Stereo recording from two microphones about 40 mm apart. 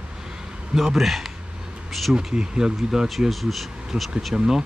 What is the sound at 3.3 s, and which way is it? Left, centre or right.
Speech, centre.